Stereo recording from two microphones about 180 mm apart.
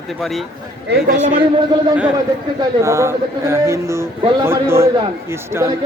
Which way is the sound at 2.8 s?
15° right (ahead or behind).